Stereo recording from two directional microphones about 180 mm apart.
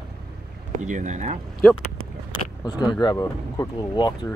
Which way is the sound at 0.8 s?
45° right (ahead or behind).